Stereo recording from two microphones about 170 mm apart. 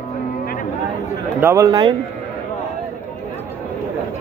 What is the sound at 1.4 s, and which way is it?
Speech, 20° right (ahead or behind).